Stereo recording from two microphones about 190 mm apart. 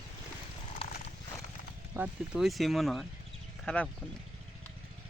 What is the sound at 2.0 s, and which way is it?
Speech, 5° right (ahead or behind).